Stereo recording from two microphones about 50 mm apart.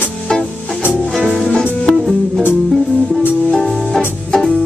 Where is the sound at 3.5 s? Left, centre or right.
Centre.